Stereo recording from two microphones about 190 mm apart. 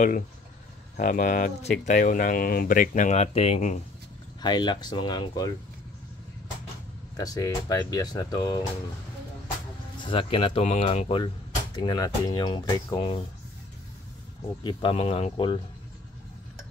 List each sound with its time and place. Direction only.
0.9 s speech: 45° left (ahead or behind)
4.4 s speech: 20° left (ahead or behind)
7.2 s speech: 20° left (ahead or behind)
10.0 s speech: 30° left (ahead or behind)
14.6 s speech: 25° left (ahead or behind)